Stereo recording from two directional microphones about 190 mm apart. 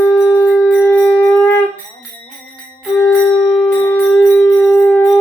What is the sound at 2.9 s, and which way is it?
Music, 10° left (ahead or behind).